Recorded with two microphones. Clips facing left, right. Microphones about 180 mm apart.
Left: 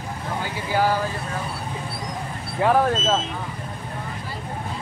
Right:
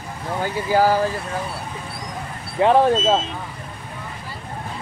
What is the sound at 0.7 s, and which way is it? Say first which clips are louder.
Speech: right 4 dB; 40° right (ahead or behind).